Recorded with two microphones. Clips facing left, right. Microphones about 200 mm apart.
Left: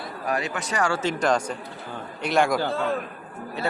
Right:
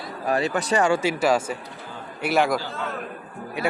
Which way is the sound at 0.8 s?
15° right (ahead or behind).